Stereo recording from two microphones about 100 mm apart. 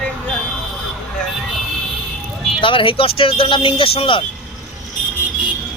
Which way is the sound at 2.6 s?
60° left (ahead or behind).